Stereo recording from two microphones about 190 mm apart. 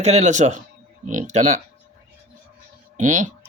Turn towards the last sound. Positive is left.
turn(degrees=-40)  # may be behind; listen again after turning